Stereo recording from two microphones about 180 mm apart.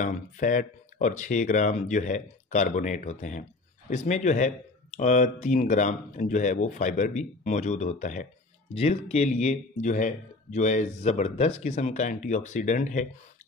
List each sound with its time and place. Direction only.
0.0 s speech: 45° left (ahead or behind)